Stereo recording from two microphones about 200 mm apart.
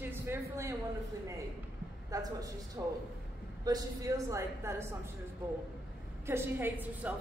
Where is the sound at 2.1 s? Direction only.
20° right (ahead or behind).